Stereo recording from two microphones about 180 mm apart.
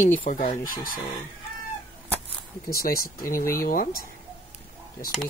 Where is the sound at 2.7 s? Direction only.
55° left (ahead or behind).